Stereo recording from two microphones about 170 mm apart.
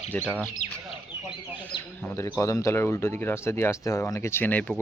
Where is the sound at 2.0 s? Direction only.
10° left (ahead or behind).